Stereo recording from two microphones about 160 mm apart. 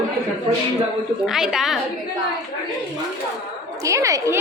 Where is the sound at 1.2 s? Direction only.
Centre (ahead or behind).